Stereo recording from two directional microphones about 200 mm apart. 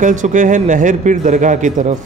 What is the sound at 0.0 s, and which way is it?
Speech, 40° right (ahead or behind).